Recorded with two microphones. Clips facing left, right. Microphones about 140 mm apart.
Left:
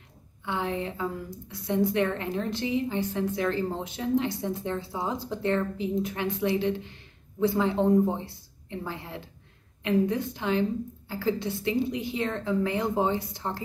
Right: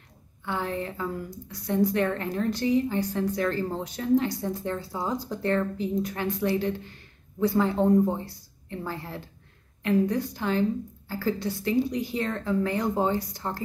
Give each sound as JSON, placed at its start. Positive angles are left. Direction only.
{"t": 0.5, "sound": "speech", "side_deg": 20}